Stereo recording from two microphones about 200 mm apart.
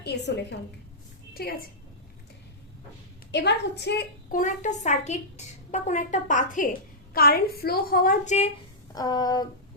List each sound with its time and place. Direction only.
0.0 s a woman's voice: 60° left (ahead or behind)
3.3 s a woman's voice: 60° left (ahead or behind); by 8.5 s 35° left (ahead or behind)
9.0 s a sound: 20° left (ahead or behind)